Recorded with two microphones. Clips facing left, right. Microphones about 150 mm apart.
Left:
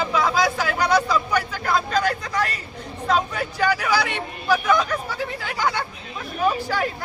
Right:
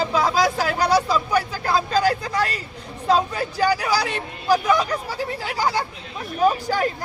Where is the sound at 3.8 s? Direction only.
35° right (ahead or behind).